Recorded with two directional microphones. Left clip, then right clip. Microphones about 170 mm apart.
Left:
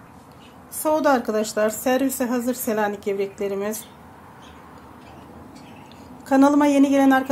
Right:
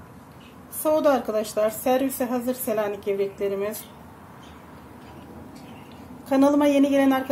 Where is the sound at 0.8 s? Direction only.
40° left (ahead or behind).